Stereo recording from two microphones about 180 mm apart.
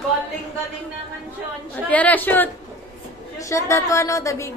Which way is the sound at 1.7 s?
10° left (ahead or behind).